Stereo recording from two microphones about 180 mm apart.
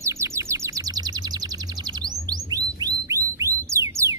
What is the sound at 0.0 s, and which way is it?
Bird, 15° right (ahead or behind).